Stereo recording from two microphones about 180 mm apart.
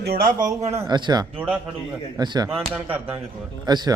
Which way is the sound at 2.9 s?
10° right (ahead or behind).